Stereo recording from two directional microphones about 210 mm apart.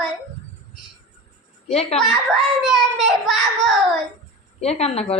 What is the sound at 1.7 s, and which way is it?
Speech, 30° left (ahead or behind).